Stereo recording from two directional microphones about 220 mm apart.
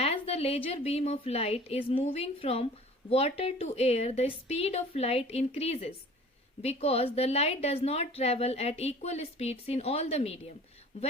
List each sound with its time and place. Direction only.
0.0 s a woman's voice: 25° left (ahead or behind)